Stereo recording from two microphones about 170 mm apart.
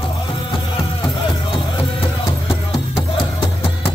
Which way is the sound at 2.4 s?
30° left (ahead or behind).